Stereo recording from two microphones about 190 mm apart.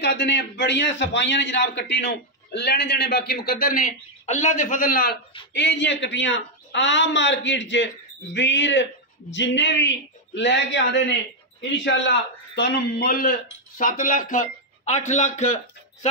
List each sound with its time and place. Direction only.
0.0 s a man's voice: 65° left (ahead or behind)
5.5 s a man's voice: 65° left (ahead or behind); by 15.4 s 40° left (ahead or behind)